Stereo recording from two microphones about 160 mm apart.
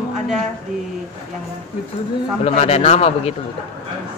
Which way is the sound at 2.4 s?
40° left (ahead or behind).